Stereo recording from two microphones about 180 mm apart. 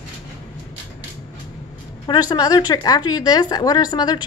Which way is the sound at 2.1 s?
20° left (ahead or behind).